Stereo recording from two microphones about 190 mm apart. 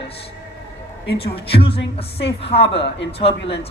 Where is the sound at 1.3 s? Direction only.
30° left (ahead or behind).